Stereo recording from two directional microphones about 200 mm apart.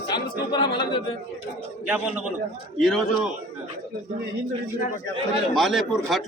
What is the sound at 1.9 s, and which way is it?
A man's voice, 5° right (ahead or behind).